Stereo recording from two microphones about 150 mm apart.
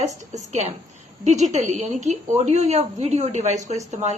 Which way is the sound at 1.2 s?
55° right (ahead or behind).